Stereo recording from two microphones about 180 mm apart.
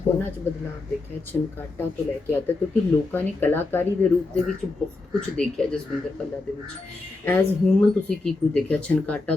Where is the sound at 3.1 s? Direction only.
10° left (ahead or behind).